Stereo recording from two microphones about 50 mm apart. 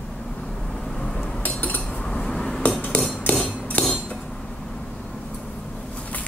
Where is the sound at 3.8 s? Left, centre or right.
Centre.